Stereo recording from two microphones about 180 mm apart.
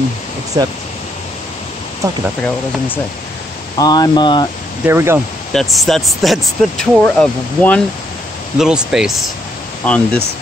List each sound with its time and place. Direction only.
0.6 s speech: 20° right (ahead or behind)
3.7 s speech: 20° left (ahead or behind)
4.8 s speech: 15° right (ahead or behind)
5.5 s speech: centre (ahead or behind)